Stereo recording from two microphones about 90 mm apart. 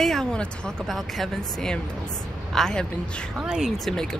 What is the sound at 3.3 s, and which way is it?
Speech, 10° right (ahead or behind).